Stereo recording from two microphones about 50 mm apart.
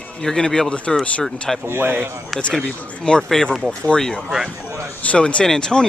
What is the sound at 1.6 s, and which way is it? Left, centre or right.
Speech, right.